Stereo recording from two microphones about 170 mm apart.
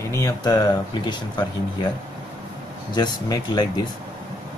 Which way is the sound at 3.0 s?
25° left (ahead or behind).